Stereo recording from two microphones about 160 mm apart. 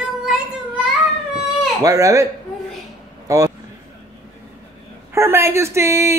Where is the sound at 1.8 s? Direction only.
20° right (ahead or behind).